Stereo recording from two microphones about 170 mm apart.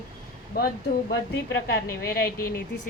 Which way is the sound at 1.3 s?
90° left.